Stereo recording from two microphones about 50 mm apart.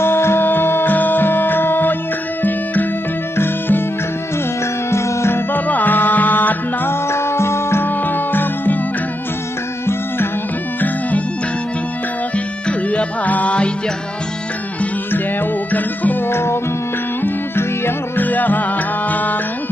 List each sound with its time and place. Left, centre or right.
0.0 s music: left
4.9 s music: left
5.5 s music: left
7.1 s music: left
8.0 s music: left
10.8 s music: left
12.6 s music: left
15.7 s music: left
16.3 s music: left
18.2 s music: left